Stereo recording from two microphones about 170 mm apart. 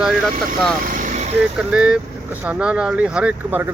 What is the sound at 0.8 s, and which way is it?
Vehicle, 50° right (ahead or behind).